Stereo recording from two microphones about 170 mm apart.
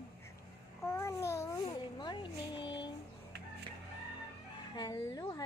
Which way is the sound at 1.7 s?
25° left (ahead or behind).